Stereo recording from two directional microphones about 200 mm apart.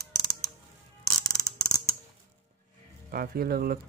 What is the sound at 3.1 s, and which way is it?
Speech, 45° right (ahead or behind).